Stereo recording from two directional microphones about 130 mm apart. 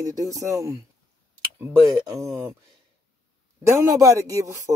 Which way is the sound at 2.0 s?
30° right (ahead or behind).